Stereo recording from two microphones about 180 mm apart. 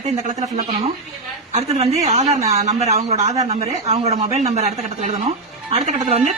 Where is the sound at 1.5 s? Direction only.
35° right (ahead or behind).